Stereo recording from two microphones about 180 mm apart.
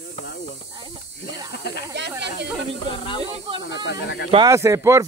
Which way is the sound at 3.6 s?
85° left.